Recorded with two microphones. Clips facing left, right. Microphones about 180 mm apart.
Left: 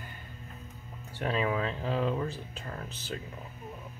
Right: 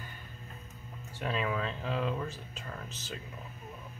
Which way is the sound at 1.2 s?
35° left (ahead or behind).